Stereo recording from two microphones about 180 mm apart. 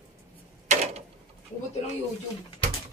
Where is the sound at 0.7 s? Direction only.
35° right (ahead or behind).